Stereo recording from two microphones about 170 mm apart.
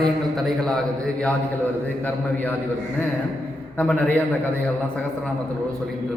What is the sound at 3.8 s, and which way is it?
Speech, 10° left (ahead or behind).